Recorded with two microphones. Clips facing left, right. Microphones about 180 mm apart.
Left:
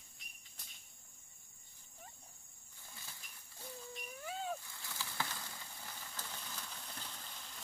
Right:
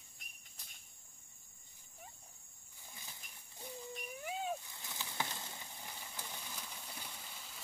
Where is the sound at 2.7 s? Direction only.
15° right (ahead or behind).